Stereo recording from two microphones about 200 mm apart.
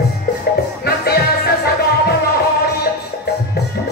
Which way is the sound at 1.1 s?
50° left (ahead or behind).